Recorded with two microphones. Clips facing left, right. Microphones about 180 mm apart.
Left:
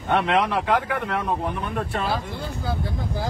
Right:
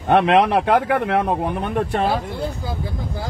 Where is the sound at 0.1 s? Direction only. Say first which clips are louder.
Right 6 dB; 55° right (ahead or behind).